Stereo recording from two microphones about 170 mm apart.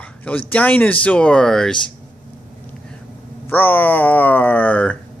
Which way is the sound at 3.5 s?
10° left (ahead or behind).